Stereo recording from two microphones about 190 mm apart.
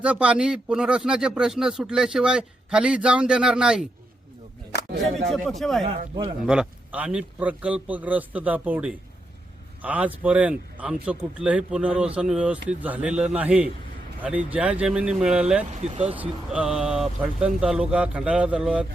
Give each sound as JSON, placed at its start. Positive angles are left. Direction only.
{"t": 0.0, "sound": "speech", "side_deg": -5}
{"t": 5.3, "sound": "speech", "side_deg": 0}
{"t": 15.6, "sound": "speech", "side_deg": -35}
{"t": 16.1, "sound": "speech", "side_deg": -5}